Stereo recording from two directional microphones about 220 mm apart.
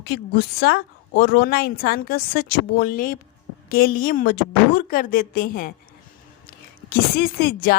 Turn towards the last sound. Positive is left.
turn(degrees=45)  # may be behind; listen again after turning